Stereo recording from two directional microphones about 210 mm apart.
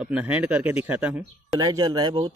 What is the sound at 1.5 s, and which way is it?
Speech, 15° right (ahead or behind).